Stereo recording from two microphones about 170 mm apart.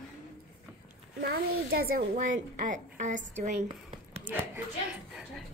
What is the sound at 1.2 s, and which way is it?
A child's voice, 65° right (ahead or behind).